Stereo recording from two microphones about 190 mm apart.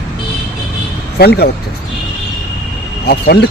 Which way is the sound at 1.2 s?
55° left (ahead or behind).